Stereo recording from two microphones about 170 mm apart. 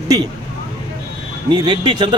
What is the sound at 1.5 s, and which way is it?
Speech, 25° right (ahead or behind).